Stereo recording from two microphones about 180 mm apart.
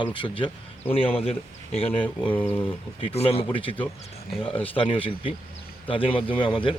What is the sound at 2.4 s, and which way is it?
Speech, 10° left (ahead or behind).